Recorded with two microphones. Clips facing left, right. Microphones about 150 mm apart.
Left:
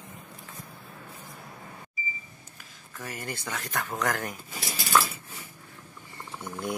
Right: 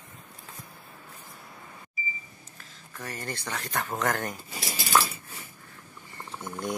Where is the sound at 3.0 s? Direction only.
10° left (ahead or behind).